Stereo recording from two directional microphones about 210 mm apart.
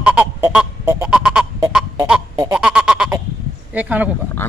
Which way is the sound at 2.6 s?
5° right (ahead or behind).